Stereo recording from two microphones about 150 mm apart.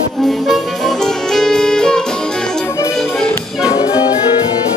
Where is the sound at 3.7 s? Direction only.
30° left (ahead or behind).